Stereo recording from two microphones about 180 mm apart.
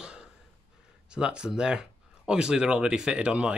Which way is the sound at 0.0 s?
5° right (ahead or behind).